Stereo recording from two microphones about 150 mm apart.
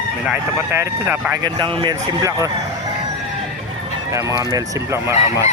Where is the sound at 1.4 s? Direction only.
35° right (ahead or behind).